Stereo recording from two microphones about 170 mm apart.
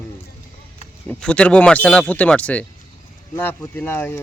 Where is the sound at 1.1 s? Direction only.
5° left (ahead or behind).